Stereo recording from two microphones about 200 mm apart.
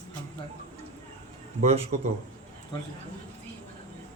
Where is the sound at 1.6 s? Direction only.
30° right (ahead or behind).